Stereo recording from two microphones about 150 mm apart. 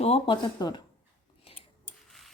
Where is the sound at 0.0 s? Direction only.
40° left (ahead or behind).